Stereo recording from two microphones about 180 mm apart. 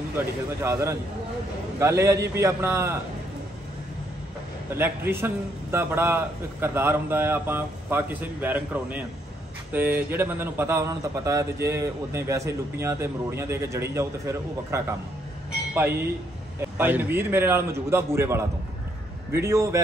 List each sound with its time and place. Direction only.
0.6 s a man's voice: 15° right (ahead or behind)
4.7 s a man's voice: 10° right (ahead or behind)